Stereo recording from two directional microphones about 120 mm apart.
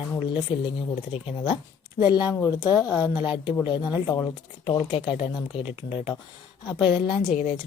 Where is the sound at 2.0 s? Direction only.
35° left (ahead or behind).